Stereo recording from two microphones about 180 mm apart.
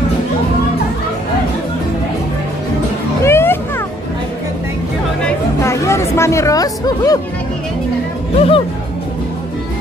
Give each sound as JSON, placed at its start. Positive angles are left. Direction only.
{"t": 3.3, "sound": "a sound", "side_deg": 15}
{"t": 5.6, "sound": "music", "side_deg": 15}
{"t": 8.4, "sound": "speech", "side_deg": 30}